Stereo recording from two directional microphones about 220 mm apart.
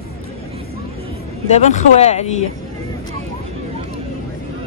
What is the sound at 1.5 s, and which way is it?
Speech, 30° left (ahead or behind).